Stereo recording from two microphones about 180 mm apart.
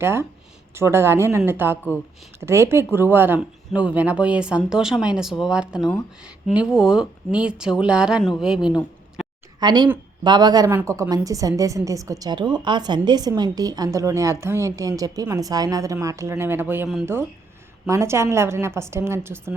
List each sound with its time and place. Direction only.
0.0 s speech: 15° right (ahead or behind)
9.6 s a woman's voice: 25° right (ahead or behind); by 17.1 s 5° right (ahead or behind)
17.8 s speech: 15° right (ahead or behind)